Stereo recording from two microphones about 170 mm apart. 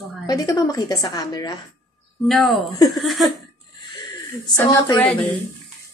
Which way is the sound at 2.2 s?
Centre (ahead or behind).